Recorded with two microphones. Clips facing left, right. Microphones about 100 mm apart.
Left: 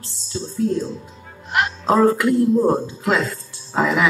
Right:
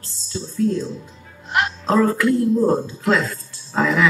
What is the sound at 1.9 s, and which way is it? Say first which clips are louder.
Speech: left 2 dB; 20° left (ahead or behind).